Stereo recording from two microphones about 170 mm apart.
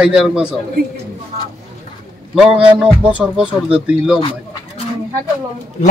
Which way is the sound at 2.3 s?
5° right (ahead or behind).